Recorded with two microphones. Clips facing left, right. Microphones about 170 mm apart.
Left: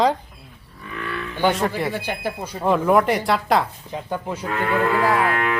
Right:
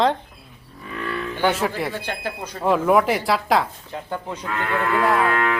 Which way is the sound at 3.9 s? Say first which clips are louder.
Left 2 dB; 15° left (ahead or behind).